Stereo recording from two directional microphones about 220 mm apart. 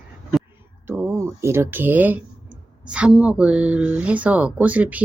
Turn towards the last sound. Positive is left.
turn(degrees=-5)  # may be behind; listen again after turning